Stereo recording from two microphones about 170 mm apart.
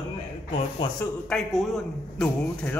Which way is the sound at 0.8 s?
25° left (ahead or behind).